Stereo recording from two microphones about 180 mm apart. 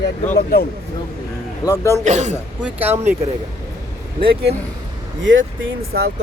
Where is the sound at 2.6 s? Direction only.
10° right (ahead or behind).